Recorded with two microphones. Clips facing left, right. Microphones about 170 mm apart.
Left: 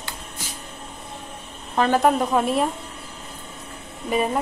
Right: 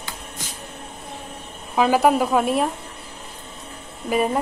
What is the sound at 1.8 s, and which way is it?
Speech, 5° right (ahead or behind).